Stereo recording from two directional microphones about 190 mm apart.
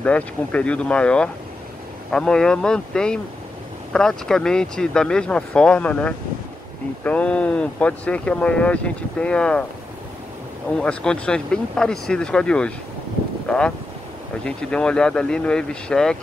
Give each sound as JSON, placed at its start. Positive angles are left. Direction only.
{"t": 0.0, "sound": "speech", "side_deg": 5}
{"t": 10.8, "sound": "speech", "side_deg": 5}